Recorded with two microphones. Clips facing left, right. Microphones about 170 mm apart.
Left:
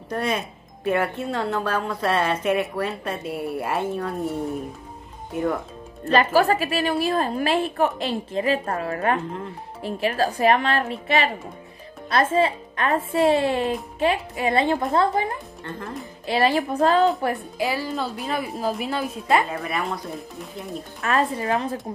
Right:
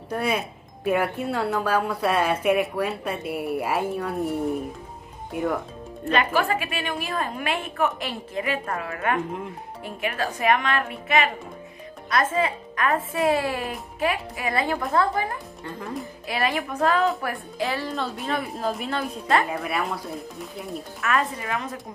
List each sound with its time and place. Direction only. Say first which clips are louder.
0.1 s a woman's voice: even; 10° right (ahead or behind)
5.3 s a woman's voice: left 1 dB; 5° right (ahead or behind)
6.0 s a woman's voice: left 4 dB; 35° left (ahead or behind)
15.8 s a woman's voice: right 3 dB; centre (ahead or behind)
16.3 s speech: left 6 dB; 35° left (ahead or behind)
17.6 s a woman's voice: left 2 dB; centre (ahead or behind)
21.0 s a woman's voice: left 3 dB; 30° left (ahead or behind)